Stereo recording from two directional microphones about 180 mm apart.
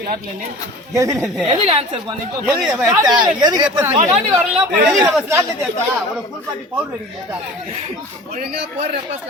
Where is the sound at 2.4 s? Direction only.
5° right (ahead or behind).